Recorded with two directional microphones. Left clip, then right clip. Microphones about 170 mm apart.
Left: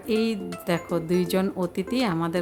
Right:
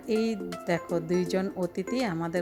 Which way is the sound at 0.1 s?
20° right (ahead or behind).